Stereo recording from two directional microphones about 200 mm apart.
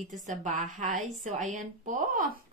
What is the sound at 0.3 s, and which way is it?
A woman's voice, 35° right (ahead or behind).